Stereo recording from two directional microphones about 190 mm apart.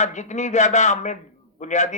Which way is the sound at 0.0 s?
40° left (ahead or behind).